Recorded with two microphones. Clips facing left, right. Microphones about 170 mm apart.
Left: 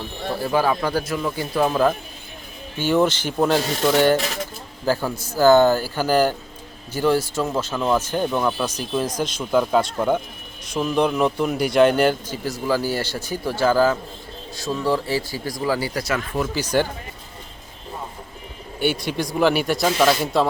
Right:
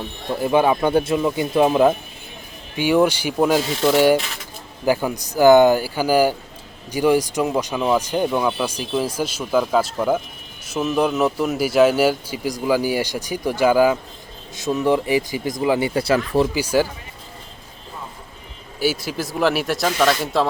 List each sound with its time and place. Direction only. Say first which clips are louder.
0.4 s speech: right 4 dB; 20° right (ahead or behind)
16.6 s speech: right 2 dB; 5° right (ahead or behind)
18.8 s speech: even; 5° right (ahead or behind)